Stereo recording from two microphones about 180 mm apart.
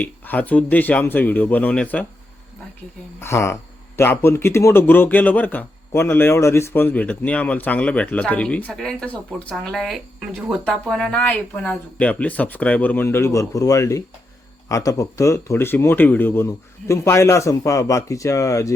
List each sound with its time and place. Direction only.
0.0 s speech: 10° left (ahead or behind)
3.2 s speech: 15° left (ahead or behind)